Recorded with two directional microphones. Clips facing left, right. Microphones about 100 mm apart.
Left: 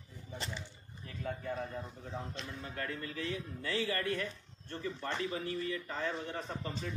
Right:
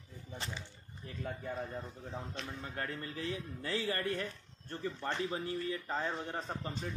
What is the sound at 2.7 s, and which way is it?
A man's voice, 30° right (ahead or behind).